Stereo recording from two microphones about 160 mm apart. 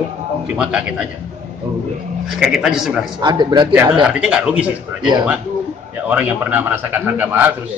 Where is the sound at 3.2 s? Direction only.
25° right (ahead or behind).